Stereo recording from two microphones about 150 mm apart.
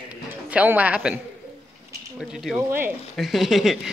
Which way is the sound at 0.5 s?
10° right (ahead or behind).